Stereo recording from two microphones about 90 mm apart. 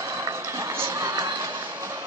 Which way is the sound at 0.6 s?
35° right (ahead or behind).